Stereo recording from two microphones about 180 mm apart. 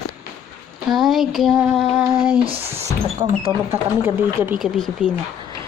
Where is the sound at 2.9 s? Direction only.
15° right (ahead or behind).